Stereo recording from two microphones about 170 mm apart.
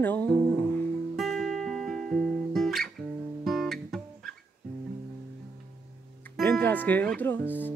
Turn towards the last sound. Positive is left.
turn(degrees=10)  # may be behind; listen again after turning